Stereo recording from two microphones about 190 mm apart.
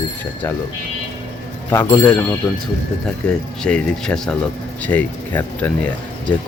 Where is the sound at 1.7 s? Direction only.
10° left (ahead or behind).